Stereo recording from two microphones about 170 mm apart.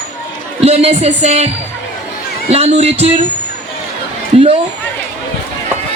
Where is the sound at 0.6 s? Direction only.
35° right (ahead or behind).